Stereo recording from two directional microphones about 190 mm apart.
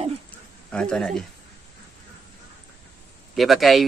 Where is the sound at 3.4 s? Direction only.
Centre (ahead or behind).